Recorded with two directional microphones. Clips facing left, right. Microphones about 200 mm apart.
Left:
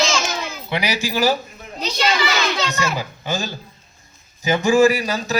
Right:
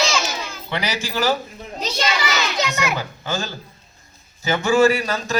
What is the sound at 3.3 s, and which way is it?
A man's voice, 10° left (ahead or behind).